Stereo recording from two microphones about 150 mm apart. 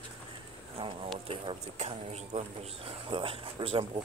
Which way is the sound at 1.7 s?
45° right (ahead or behind).